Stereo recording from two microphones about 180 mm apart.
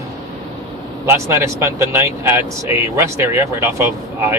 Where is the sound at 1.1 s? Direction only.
15° right (ahead or behind).